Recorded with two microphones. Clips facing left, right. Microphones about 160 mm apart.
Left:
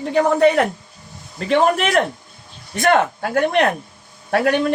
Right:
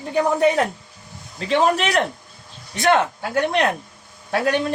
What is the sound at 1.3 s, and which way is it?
A man's voice, 55° left (ahead or behind).